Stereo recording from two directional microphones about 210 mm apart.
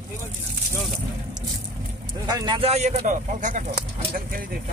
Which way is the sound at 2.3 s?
20° right (ahead or behind).